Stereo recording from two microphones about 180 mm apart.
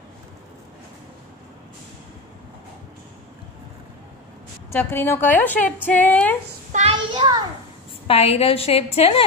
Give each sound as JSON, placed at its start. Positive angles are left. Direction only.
{"t": 4.6, "sound": "a woman's voice", "side_deg": 15}
{"t": 6.7, "sound": "a child's voice", "side_deg": -35}
{"t": 8.1, "sound": "a woman's voice", "side_deg": 35}